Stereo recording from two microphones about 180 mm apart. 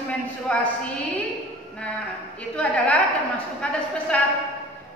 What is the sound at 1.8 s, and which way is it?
A woman's voice, 5° left (ahead or behind).